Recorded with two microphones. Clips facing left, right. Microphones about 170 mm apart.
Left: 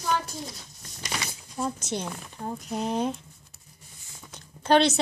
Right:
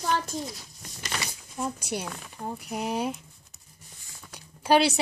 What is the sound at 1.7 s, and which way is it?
Speech, 10° right (ahead or behind).